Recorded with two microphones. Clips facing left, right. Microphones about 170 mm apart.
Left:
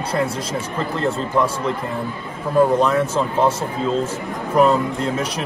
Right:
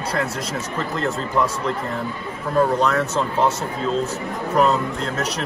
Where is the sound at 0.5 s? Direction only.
35° left (ahead or behind).